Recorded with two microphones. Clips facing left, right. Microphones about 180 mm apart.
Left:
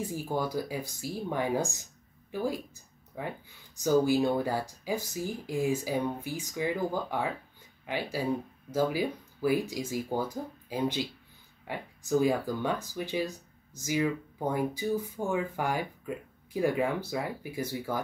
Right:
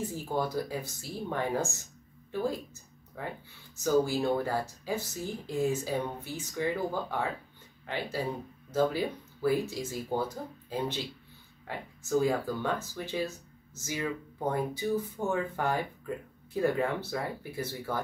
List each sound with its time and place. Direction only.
0.0 s speech: 10° left (ahead or behind)